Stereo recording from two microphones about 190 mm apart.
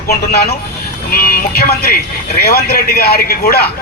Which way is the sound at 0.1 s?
55° left (ahead or behind).